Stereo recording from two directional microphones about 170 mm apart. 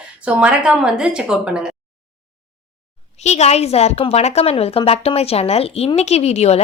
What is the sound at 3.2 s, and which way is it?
Speech, 40° left (ahead or behind).